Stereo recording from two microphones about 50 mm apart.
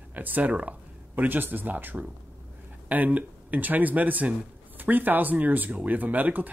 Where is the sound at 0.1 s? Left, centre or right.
Right.